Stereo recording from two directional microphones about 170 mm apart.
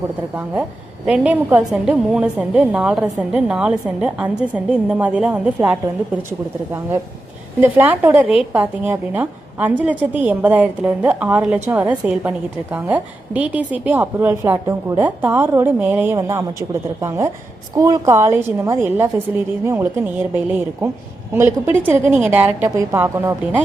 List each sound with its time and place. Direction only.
1.0 s a woman's voice: 5° right (ahead or behind)
7.6 s a woman's voice: 10° right (ahead or behind)